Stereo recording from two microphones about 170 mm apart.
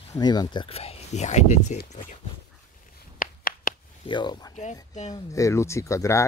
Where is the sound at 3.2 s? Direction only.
60° left (ahead or behind).